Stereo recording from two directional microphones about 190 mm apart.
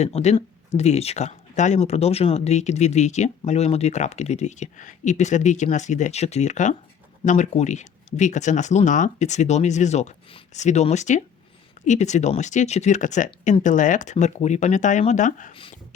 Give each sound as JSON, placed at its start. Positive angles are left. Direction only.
{"t": 0.0, "sound": "speech", "side_deg": 35}